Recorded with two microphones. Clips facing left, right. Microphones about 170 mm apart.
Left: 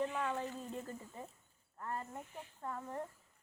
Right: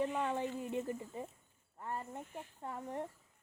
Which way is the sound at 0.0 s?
15° right (ahead or behind).